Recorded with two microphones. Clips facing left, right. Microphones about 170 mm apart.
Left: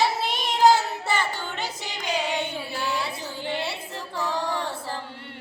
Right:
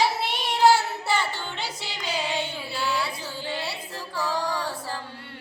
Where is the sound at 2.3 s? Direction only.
20° left (ahead or behind).